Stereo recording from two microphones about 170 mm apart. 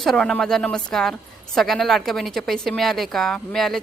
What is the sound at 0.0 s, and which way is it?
A woman's voice, centre (ahead or behind).